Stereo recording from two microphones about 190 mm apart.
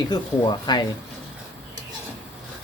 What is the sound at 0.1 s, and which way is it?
Speech, 25° left (ahead or behind).